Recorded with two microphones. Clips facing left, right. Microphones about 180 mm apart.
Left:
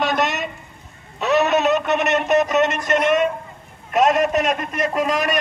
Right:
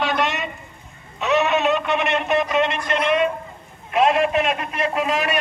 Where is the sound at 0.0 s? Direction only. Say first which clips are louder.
Left 1 dB; 45° left (ahead or behind).